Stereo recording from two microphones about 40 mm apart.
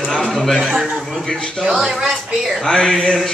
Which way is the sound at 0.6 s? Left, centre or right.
Centre.